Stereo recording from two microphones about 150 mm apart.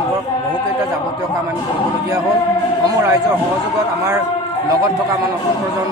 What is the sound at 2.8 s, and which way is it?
Speech, 20° right (ahead or behind).